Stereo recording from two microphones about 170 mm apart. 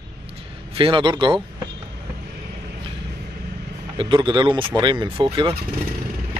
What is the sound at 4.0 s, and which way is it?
Speech, 30° right (ahead or behind).